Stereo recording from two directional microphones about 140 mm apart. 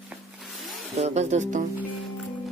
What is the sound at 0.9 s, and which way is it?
Speech, 50° right (ahead or behind).